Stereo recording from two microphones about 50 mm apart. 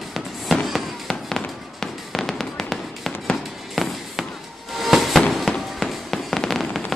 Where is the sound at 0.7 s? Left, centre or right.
Centre.